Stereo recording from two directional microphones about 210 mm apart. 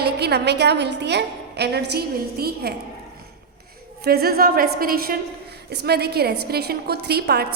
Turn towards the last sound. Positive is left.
turn(degrees=-50)  # may be behind; listen again after turning